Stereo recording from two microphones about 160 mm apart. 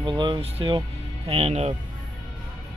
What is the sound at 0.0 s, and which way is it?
Speech, 30° right (ahead or behind).